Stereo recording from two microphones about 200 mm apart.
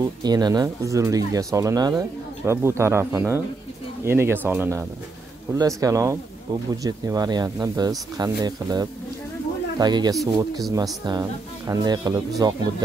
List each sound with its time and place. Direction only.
0.0 s speech: 20° right (ahead or behind)